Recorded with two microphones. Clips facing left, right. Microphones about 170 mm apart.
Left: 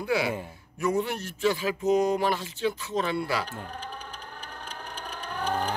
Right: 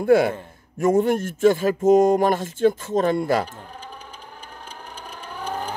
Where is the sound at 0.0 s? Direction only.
50° right (ahead or behind).